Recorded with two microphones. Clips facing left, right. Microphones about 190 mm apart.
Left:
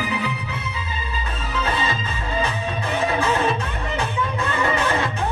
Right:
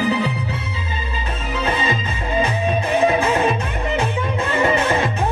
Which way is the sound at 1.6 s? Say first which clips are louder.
Right 4 dB; 20° right (ahead or behind).